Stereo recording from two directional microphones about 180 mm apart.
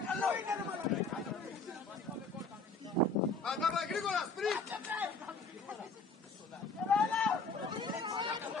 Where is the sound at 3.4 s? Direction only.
Centre (ahead or behind).